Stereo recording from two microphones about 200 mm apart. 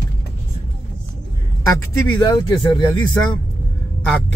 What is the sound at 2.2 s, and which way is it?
Speech, 25° left (ahead or behind).